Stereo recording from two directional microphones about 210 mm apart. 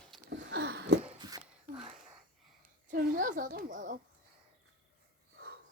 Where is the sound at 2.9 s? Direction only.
40° right (ahead or behind).